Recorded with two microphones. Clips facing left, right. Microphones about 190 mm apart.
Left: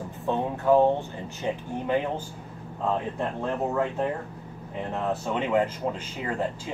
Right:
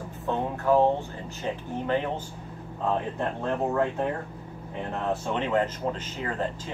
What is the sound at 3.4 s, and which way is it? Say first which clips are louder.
Speech: right 1 dB; 5° left (ahead or behind).